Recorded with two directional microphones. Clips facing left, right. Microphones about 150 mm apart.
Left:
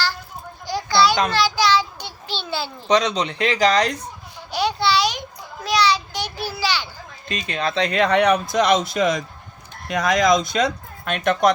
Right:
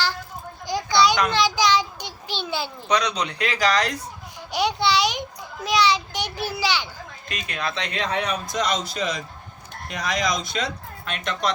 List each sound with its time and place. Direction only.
0.7 s children playing: 20° right (ahead or behind)
1.3 s a sound: 20° right (ahead or behind)
2.8 s speech: 25° left (ahead or behind)
4.4 s babbling: 20° right (ahead or behind)
5.6 s a sound: 20° right (ahead or behind)
7.3 s speech: 25° left (ahead or behind)
7.9 s speech: 65° left (ahead or behind)